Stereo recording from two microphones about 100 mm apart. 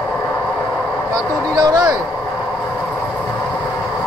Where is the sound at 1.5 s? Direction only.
40° right (ahead or behind).